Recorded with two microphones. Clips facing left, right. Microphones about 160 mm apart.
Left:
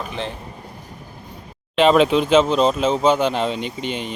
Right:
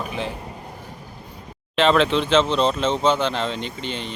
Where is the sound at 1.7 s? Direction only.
15° left (ahead or behind).